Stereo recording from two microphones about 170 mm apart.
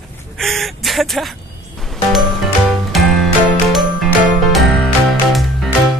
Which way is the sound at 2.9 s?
Centre (ahead or behind).